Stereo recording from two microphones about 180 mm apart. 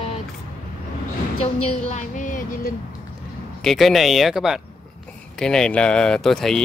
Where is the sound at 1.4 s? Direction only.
40° left (ahead or behind).